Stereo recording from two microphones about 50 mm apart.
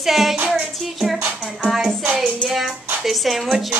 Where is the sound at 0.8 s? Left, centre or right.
Centre.